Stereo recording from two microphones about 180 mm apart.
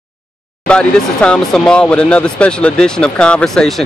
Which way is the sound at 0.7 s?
5° left (ahead or behind).